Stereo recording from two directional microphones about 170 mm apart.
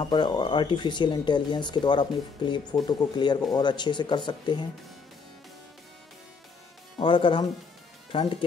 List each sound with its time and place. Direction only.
0.0 s speech: 25° left (ahead or behind)
7.0 s speech: 30° left (ahead or behind)